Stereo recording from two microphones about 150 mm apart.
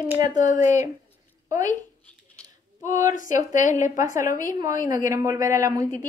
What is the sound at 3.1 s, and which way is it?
Speech, 60° left (ahead or behind).